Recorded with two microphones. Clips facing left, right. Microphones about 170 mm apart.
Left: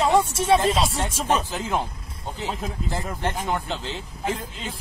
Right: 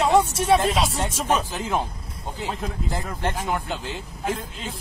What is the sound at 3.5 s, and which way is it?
Speech, 10° right (ahead or behind).